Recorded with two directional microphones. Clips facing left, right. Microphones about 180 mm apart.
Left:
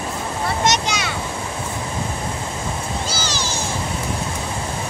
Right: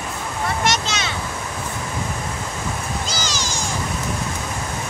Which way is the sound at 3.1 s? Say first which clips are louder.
Left 1 dB; 15° right (ahead or behind).